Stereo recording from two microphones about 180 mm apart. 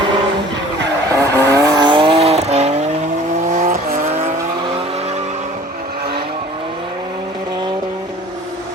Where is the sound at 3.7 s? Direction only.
50° right (ahead or behind).